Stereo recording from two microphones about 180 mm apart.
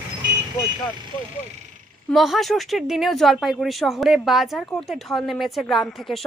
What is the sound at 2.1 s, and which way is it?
Speech, centre (ahead or behind).